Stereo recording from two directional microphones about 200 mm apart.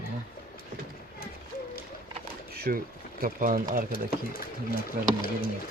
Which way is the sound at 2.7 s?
45° right (ahead or behind).